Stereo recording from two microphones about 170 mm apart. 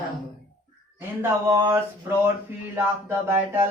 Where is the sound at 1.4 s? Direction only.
15° right (ahead or behind).